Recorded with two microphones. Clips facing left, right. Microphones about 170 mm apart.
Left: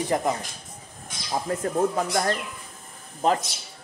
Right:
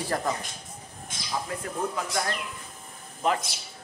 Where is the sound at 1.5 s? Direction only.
40° left (ahead or behind).